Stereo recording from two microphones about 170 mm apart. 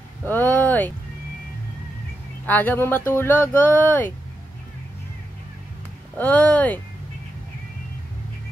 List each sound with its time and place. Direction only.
0.3 s a sound: 10° left (ahead or behind)
2.4 s speech: 10° left (ahead or behind)
6.1 s speech: 10° left (ahead or behind)